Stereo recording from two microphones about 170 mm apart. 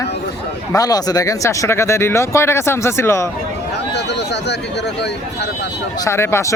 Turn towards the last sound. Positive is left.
turn(degrees=15)  # may be behind; listen again after turning